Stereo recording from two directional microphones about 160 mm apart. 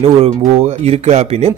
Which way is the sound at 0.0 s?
40° right (ahead or behind).